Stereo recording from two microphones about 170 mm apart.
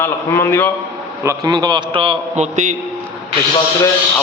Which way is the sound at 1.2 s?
20° right (ahead or behind).